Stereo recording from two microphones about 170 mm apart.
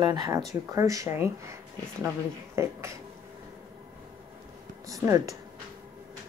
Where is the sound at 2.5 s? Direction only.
15° right (ahead or behind).